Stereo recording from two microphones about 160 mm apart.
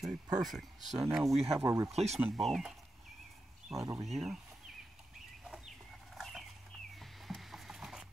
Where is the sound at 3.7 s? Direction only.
20° right (ahead or behind).